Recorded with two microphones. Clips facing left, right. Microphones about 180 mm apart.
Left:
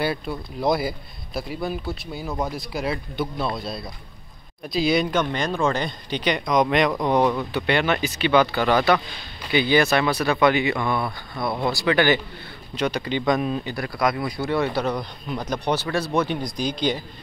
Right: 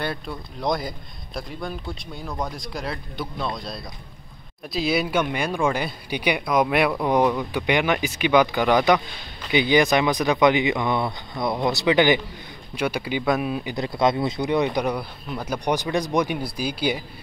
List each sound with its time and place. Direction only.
0.0 s speech: 5° left (ahead or behind)
13.7 s speech: 25° right (ahead or behind)